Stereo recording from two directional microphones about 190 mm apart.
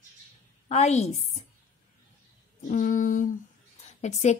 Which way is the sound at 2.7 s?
45° left (ahead or behind).